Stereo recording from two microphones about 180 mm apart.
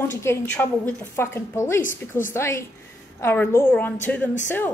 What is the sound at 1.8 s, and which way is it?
Speech, 45° left (ahead or behind).